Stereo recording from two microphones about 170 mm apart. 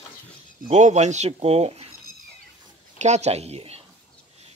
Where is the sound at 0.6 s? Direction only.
45° right (ahead or behind).